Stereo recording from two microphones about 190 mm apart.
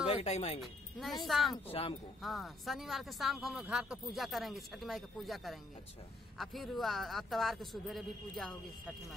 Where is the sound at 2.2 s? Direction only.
Centre (ahead or behind).